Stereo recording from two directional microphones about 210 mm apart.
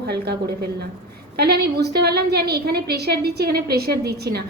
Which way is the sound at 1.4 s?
50° right (ahead or behind).